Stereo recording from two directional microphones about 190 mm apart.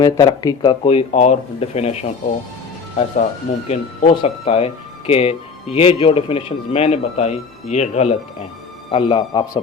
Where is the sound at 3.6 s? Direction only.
35° left (ahead or behind).